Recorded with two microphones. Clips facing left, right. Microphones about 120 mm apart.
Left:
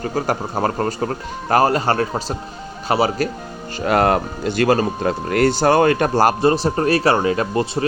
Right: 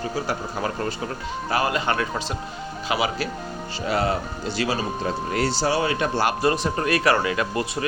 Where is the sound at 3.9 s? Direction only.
60° left (ahead or behind).